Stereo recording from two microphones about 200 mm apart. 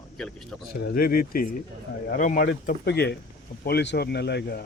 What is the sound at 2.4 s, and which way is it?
Speech, 55° left (ahead or behind).